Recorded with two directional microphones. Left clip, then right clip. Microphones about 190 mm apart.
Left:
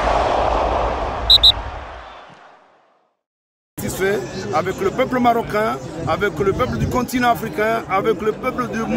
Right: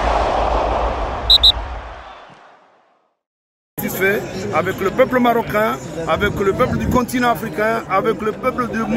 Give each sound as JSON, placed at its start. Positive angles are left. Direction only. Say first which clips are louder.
{"t": 0.0, "sound": "a sound", "louder": "even", "side_deg": 0}
{"t": 3.7, "sound": "speech", "louder": "right 2 dB", "side_deg": 15}
{"t": 4.2, "sound": "speech", "louder": "right 1 dB", "side_deg": -35}
{"t": 4.6, "sound": "speech", "louder": "right 3 dB", "side_deg": 15}
{"t": 5.8, "sound": "speech", "louder": "right 3 dB", "side_deg": -35}
{"t": 6.0, "sound": "speech", "louder": "right 1 dB", "side_deg": 15}